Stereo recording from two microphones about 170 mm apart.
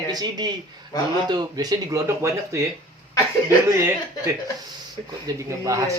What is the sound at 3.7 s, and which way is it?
Speech, 15° right (ahead or behind).